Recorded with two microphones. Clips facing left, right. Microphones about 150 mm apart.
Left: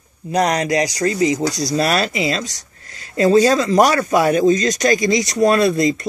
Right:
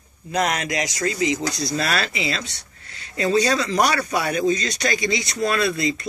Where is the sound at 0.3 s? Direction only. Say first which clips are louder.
Left 6 dB; 35° left (ahead or behind).